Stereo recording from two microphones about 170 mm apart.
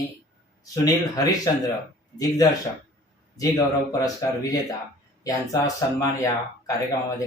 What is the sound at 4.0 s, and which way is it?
Speech, 20° left (ahead or behind).